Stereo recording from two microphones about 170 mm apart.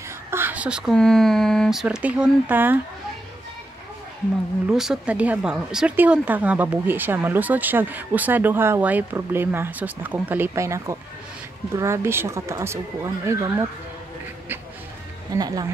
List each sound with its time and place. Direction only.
0.3 s a sound: 10° right (ahead or behind)
0.9 s speech: 5° left (ahead or behind)
4.6 s a woman's voice: 5° right (ahead or behind)
15.3 s speech: 20° right (ahead or behind)